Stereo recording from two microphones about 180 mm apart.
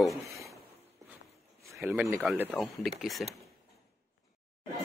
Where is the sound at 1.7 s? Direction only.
5° right (ahead or behind).